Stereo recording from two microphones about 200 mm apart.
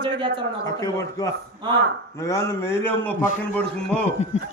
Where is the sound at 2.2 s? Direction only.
15° left (ahead or behind).